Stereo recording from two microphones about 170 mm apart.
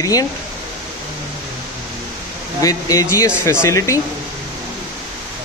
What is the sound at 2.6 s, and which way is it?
Speech, 20° left (ahead or behind).